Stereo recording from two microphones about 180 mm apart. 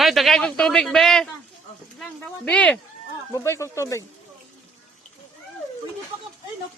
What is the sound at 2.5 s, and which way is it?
A man's voice, 5° left (ahead or behind).